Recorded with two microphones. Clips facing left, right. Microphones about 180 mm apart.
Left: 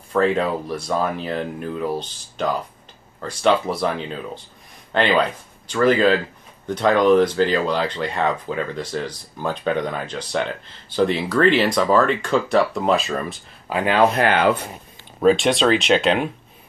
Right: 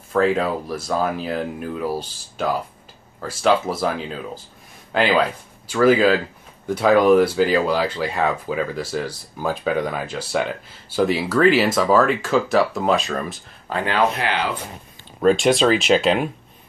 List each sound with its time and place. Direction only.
0.1 s speech: centre (ahead or behind)
13.7 s speech: 15° left (ahead or behind)
14.1 s speech: 50° left (ahead or behind)
15.2 s speech: centre (ahead or behind)